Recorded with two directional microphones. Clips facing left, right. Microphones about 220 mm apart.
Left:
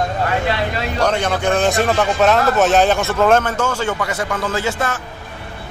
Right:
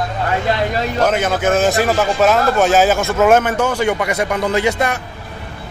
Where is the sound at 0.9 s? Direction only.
5° right (ahead or behind).